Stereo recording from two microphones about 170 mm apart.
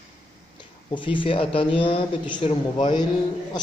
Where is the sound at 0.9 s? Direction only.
30° left (ahead or behind).